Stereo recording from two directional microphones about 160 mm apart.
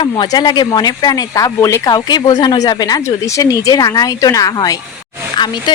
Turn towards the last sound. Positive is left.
turn(degrees=25)  # may be behind; listen again after turning